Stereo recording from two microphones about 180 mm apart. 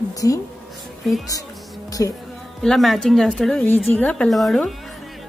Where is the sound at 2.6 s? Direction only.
Centre (ahead or behind).